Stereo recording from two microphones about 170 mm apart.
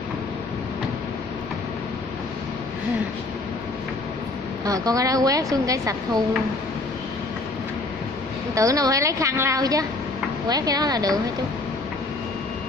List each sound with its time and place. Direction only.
4.6 s a woman's voice: 20° right (ahead or behind)
8.5 s a woman's voice: 20° right (ahead or behind)